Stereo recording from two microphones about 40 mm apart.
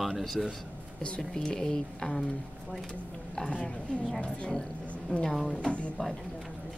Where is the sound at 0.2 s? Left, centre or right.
Centre.